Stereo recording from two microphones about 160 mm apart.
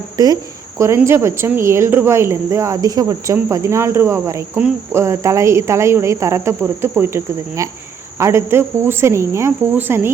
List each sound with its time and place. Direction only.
0.2 s speech: 20° right (ahead or behind)